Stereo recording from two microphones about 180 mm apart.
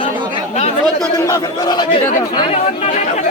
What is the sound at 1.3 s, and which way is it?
Speech, 20° left (ahead or behind).